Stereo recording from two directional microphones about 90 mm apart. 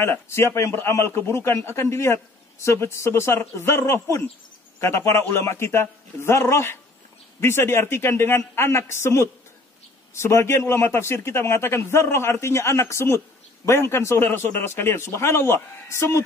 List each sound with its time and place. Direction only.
0.0 s a man's voice: 30° left (ahead or behind)